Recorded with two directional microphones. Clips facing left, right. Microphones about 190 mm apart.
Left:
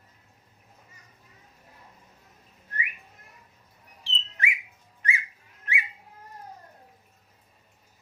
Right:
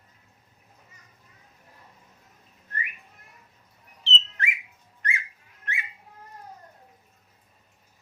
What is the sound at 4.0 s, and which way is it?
Bird, 10° left (ahead or behind).